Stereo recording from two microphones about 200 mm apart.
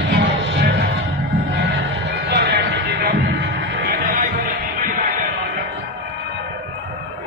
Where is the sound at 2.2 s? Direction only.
55° right (ahead or behind).